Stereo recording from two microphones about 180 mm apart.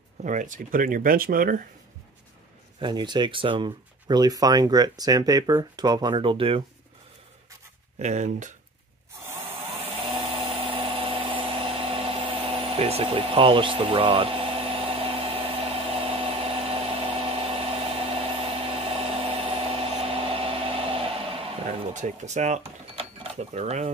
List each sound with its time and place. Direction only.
0.2 s speech: 45° right (ahead or behind)
2.8 s speech: 25° right (ahead or behind)
8.0 s speech: 40° right (ahead or behind)
9.7 s a sound: 30° right (ahead or behind)